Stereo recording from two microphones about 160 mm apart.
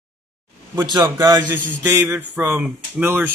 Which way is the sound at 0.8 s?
25° right (ahead or behind).